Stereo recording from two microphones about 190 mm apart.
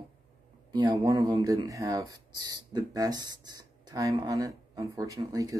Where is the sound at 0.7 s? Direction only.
20° right (ahead or behind).